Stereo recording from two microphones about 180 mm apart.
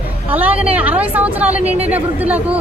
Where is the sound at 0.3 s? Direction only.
10° right (ahead or behind).